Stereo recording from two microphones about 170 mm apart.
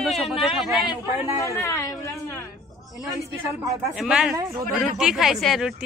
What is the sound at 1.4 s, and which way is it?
Speech, 20° left (ahead or behind).